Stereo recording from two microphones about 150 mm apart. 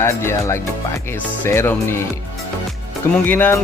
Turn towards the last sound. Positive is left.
turn(degrees=15)  # may be behind; listen again after turning